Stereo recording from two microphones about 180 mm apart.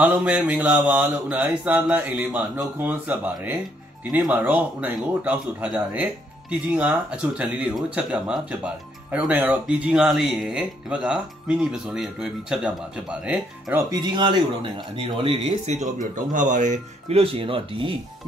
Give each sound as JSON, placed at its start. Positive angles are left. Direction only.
{"t": 0.0, "sound": "speech", "side_deg": -5}
{"t": 13.8, "sound": "speech", "side_deg": -25}